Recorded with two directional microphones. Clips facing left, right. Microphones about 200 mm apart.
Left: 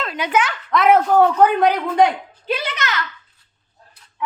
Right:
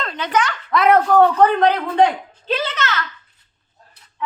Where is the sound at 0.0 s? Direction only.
5° left (ahead or behind).